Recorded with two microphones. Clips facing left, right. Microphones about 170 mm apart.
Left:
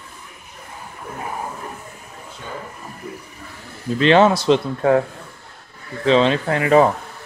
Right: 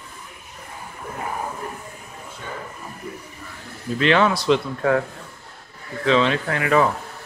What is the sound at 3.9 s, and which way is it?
Speech, 30° left (ahead or behind).